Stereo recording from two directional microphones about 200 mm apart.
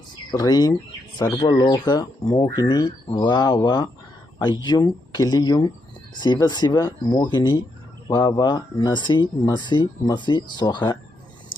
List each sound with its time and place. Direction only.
0.3 s speech: 20° left (ahead or behind)